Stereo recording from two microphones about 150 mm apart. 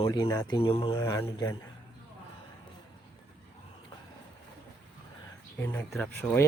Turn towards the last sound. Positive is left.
turn(degrees=5)  # may be behind; listen again after turning